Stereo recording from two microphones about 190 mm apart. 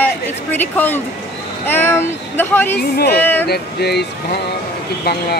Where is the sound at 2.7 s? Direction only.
55° left (ahead or behind).